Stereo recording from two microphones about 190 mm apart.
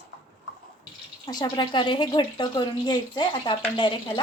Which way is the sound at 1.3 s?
20° left (ahead or behind).